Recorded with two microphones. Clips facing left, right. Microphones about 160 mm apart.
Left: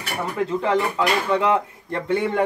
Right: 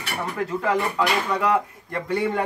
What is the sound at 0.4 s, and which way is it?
Speech, 25° left (ahead or behind).